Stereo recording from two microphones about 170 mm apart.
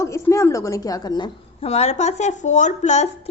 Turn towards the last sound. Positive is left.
turn(degrees=45)  # may be behind; listen again after turning